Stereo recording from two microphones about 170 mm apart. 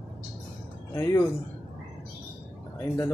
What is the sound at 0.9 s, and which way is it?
Speech, 15° left (ahead or behind).